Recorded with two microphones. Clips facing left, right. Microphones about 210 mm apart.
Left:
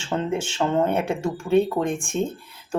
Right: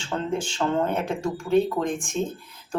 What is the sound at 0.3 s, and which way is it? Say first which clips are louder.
Speech: left 1 dB; 5° left (ahead or behind).